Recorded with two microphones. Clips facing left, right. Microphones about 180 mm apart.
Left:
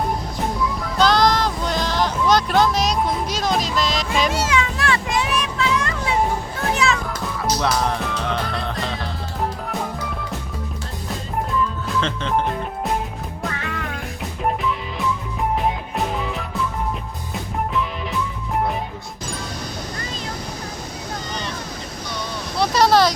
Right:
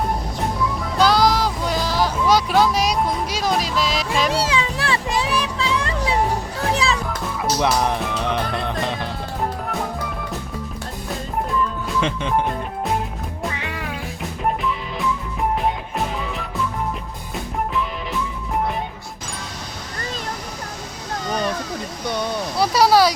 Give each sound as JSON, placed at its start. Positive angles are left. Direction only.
{"t": 0.9, "sound": "music", "side_deg": -5}
{"t": 4.3, "sound": "music", "side_deg": -30}
{"t": 6.6, "sound": "children playing", "side_deg": -35}
{"t": 7.6, "sound": "music", "side_deg": -15}
{"t": 11.9, "sound": "speech", "side_deg": -15}
{"t": 13.5, "sound": "music", "side_deg": -15}
{"t": 22.6, "sound": "a sound", "side_deg": -10}